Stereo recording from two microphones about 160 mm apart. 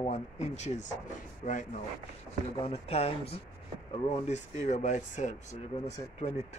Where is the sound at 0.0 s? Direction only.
45° left (ahead or behind).